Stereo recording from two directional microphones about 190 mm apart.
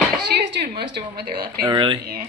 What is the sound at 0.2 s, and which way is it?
A woman's voice, 60° right (ahead or behind).